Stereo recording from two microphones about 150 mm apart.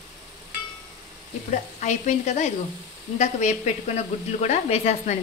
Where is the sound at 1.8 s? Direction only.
50° left (ahead or behind).